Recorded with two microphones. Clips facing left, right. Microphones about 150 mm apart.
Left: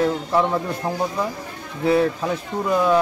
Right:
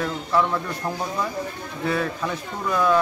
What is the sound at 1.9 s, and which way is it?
Speech, 30° left (ahead or behind).